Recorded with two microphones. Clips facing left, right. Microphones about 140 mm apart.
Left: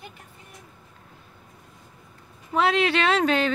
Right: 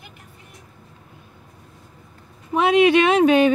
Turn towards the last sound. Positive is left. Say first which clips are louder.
# right 7 dB
turn(degrees=-15)  # may be behind; listen again after turning